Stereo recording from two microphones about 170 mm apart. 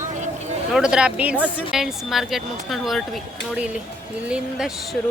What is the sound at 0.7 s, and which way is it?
A woman's voice, 5° right (ahead or behind).